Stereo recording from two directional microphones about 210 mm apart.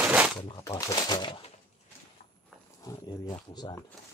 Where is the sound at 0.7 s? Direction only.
15° left (ahead or behind).